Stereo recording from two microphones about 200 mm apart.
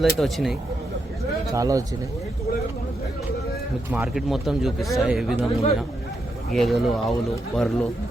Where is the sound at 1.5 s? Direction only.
15° right (ahead or behind).